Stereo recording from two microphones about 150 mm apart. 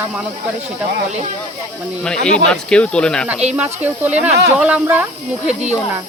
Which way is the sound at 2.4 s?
5° left (ahead or behind).